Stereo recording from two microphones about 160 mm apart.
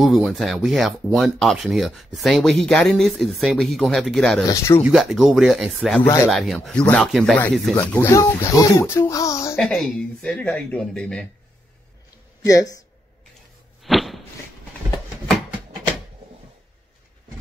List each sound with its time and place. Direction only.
0.0 s speech: centre (ahead or behind)
4.5 s speech: 15° left (ahead or behind)
4.8 s speech: centre (ahead or behind)
7.7 s speech: 15° left (ahead or behind)
9.6 s speech: centre (ahead or behind)
12.4 s speech: 20° left (ahead or behind)
13.8 s a sound: centre (ahead or behind)